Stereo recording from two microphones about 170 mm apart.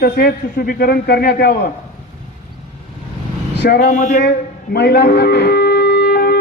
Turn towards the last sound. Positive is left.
turn(degrees=70)  # may be behind; listen again after turning